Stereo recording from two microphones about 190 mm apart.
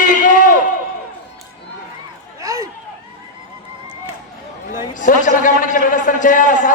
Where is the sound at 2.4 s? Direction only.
15° right (ahead or behind).